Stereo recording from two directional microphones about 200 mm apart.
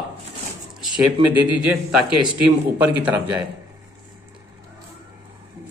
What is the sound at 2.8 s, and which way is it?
Speech, 10° right (ahead or behind).